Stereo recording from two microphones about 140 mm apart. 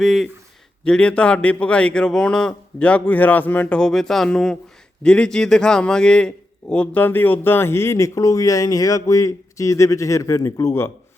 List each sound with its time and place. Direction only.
0.0 s a man's voice: centre (ahead or behind); by 10.9 s 20° left (ahead or behind)